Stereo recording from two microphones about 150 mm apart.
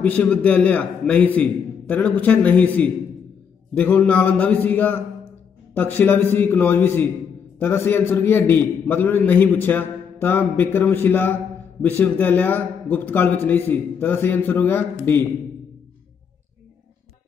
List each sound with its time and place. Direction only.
0.0 s a man's voice: 10° left (ahead or behind)